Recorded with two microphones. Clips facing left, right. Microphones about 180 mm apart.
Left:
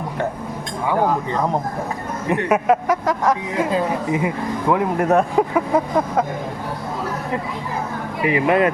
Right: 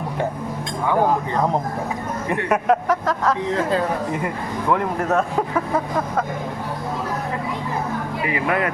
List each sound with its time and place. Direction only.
2.3 s a man's voice: 5° left (ahead or behind)
8.3 s speech: 25° left (ahead or behind)